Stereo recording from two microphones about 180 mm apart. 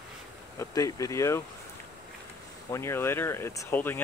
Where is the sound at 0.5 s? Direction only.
20° left (ahead or behind).